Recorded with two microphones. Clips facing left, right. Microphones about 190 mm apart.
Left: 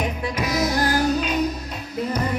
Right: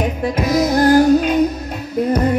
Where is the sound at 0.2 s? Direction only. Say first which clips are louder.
Right 9 dB; 45° right (ahead or behind).